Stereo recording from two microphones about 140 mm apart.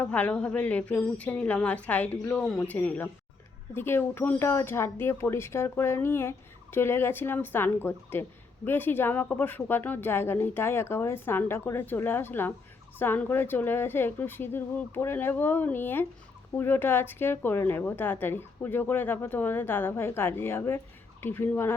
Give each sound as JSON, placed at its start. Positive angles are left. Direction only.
{"t": 0.0, "sound": "speech", "side_deg": 10}